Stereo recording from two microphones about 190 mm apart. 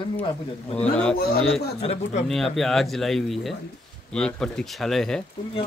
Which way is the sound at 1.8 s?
30° left (ahead or behind).